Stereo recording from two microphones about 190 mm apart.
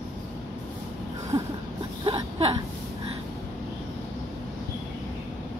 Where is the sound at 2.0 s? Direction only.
25° right (ahead or behind).